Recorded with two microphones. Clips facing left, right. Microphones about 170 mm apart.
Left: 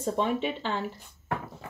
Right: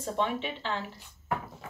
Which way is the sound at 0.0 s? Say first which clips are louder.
Left 3 dB; 40° left (ahead or behind).